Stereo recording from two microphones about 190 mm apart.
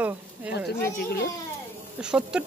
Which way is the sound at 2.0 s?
5° right (ahead or behind).